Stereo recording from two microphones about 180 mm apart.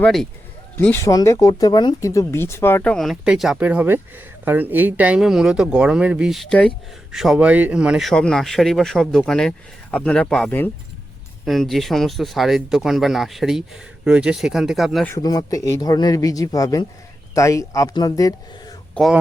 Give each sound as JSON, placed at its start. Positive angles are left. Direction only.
{"t": 0.0, "sound": "speech", "side_deg": 5}
{"t": 15.0, "sound": "speech", "side_deg": 20}
{"t": 19.0, "sound": "speech", "side_deg": 5}